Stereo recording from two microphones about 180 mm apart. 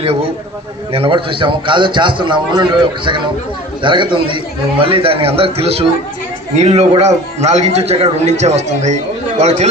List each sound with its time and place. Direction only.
0.9 s a man's voice: 30° right (ahead or behind)